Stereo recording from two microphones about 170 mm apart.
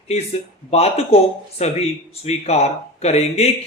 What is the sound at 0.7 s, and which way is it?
Speech, 40° left (ahead or behind).